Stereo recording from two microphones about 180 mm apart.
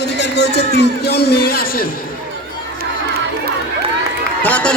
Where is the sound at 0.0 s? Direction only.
70° left (ahead or behind).